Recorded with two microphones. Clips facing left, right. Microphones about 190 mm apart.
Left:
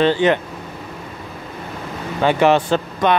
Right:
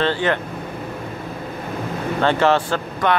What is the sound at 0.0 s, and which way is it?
Speech, 15° left (ahead or behind).